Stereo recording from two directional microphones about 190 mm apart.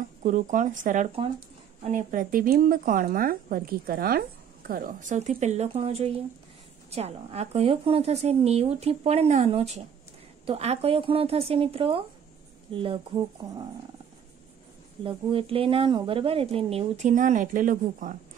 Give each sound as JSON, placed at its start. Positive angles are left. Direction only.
{"t": 0.2, "sound": "a woman's voice", "side_deg": -40}
{"t": 15.0, "sound": "speech", "side_deg": -30}